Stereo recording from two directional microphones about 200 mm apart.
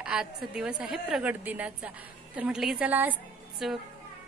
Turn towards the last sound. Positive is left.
turn(degrees=-5)  # may be behind; listen again after turning